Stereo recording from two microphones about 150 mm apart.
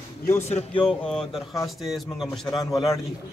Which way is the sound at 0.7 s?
5° left (ahead or behind).